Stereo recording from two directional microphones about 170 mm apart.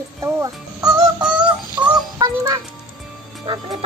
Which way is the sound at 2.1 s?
20° right (ahead or behind).